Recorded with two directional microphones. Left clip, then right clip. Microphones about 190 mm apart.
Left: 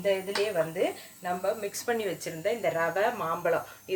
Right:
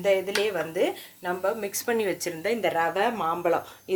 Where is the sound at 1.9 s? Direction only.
35° right (ahead or behind).